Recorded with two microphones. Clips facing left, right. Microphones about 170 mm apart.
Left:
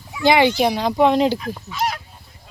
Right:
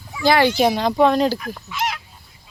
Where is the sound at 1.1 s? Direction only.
20° left (ahead or behind).